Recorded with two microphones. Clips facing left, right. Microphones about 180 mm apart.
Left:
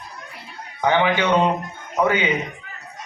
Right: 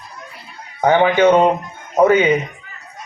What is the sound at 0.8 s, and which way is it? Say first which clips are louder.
Speech: right 7 dB; 45° right (ahead or behind).